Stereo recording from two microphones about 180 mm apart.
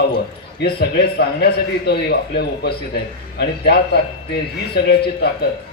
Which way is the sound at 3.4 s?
65° left (ahead or behind).